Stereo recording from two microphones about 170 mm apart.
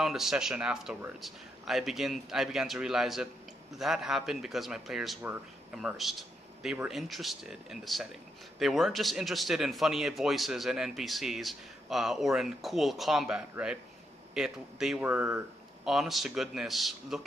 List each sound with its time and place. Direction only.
0.0 s a man's voice: centre (ahead or behind)